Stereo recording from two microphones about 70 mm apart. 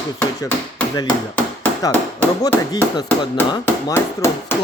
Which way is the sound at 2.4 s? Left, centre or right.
Left.